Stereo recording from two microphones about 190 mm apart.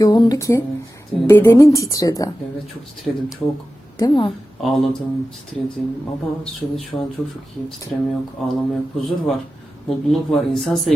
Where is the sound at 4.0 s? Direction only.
25° left (ahead or behind).